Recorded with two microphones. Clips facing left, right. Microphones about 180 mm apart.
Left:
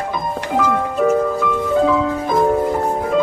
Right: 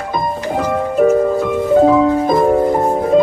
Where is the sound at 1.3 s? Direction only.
40° right (ahead or behind).